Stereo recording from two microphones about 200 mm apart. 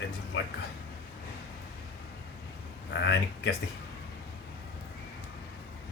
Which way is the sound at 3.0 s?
65° left (ahead or behind).